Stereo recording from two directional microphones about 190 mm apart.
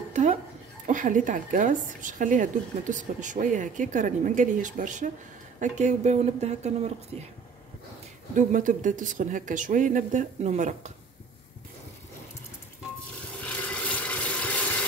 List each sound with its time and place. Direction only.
0.1 s a sound: 40° right (ahead or behind)
0.8 s a woman's voice: 40° right (ahead or behind)
8.4 s a woman's voice: 45° right (ahead or behind)
13.4 s rub: 5° left (ahead or behind)